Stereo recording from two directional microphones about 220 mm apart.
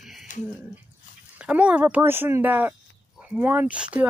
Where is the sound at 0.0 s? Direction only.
Centre (ahead or behind).